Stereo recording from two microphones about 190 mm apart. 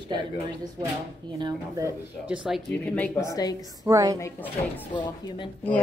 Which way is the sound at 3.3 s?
20° left (ahead or behind).